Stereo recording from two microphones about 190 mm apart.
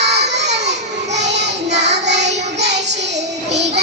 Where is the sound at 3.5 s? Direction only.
65° right (ahead or behind).